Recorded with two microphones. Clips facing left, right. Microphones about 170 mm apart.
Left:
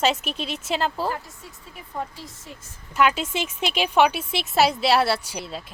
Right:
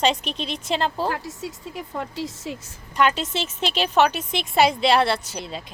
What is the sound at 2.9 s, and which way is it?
Speech, 10° left (ahead or behind).